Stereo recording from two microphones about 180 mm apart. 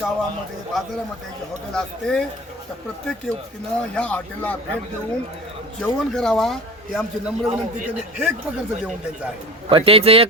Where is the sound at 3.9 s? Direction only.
10° left (ahead or behind).